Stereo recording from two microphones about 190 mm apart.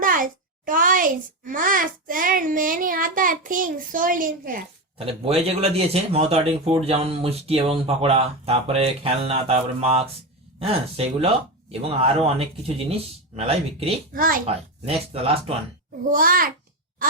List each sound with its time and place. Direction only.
0.0 s a child's voice: 45° right (ahead or behind)
4.9 s speech: 30° right (ahead or behind)
14.1 s a woman's voice: 45° right (ahead or behind)
14.4 s speech: 30° right (ahead or behind)
16.1 s a woman's voice: 50° right (ahead or behind)